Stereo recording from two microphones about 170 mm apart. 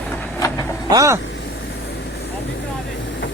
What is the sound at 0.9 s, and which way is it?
Speech, 20° right (ahead or behind).